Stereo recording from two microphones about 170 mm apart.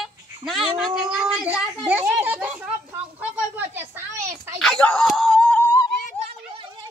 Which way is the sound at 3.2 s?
10° right (ahead or behind).